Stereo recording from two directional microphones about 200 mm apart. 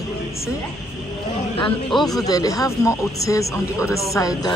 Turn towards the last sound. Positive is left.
turn(degrees=15)  # may be behind; listen again after turning